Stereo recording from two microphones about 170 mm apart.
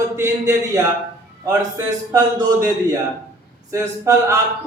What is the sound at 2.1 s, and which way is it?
A man's voice, 20° right (ahead or behind).